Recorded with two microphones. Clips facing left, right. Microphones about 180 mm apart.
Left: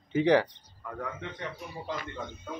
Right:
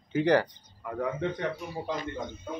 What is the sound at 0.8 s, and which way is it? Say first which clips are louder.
Speech: right 6 dB; 15° right (ahead or behind).